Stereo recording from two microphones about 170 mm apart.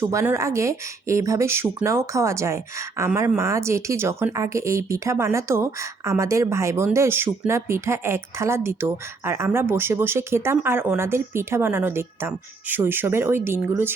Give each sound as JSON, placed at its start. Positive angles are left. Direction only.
{"t": 0.0, "sound": "speech", "side_deg": -15}